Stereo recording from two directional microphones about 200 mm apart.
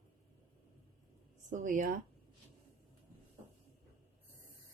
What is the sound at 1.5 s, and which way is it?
Speech, 40° right (ahead or behind).